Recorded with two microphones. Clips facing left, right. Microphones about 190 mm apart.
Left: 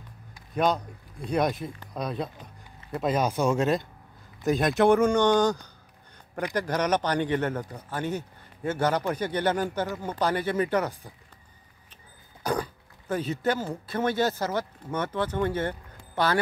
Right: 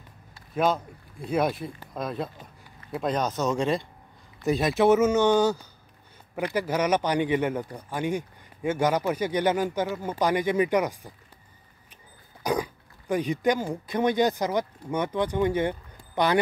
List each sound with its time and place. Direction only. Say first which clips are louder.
0.6 s speech: even; 5° right (ahead or behind)
12.4 s speech: right 2 dB; 10° right (ahead or behind)